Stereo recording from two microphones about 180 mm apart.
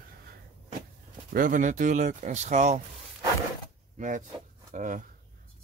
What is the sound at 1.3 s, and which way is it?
Speech, 50° right (ahead or behind).